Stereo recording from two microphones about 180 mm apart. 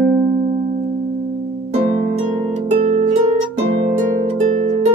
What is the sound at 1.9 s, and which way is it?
Harp, 45° right (ahead or behind).